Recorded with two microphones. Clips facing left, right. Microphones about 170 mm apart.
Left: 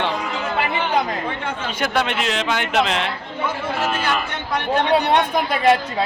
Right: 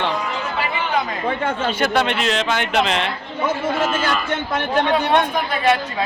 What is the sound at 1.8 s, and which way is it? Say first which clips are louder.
Speech: right 1 dB; 5° left (ahead or behind).